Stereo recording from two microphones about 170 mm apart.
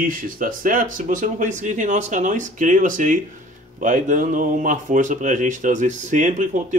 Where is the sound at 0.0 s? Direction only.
55° right (ahead or behind).